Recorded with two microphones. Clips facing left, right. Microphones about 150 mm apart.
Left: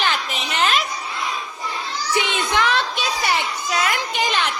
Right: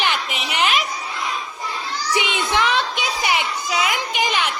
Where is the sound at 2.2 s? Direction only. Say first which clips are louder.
Even; 15° right (ahead or behind).